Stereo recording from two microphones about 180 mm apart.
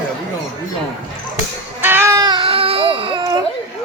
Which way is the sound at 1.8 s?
10° right (ahead or behind).